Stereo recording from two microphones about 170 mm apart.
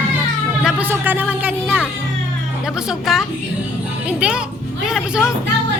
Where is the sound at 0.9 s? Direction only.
10° right (ahead or behind).